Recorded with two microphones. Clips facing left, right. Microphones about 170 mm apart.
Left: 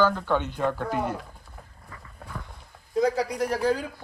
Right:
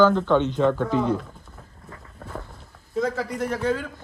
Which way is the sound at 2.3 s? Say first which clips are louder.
Right 4 dB; 25° right (ahead or behind).